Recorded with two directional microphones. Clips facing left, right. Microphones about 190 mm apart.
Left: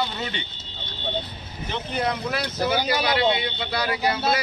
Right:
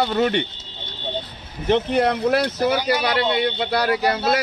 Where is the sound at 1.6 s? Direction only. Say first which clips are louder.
Right 9 dB; 65° right (ahead or behind).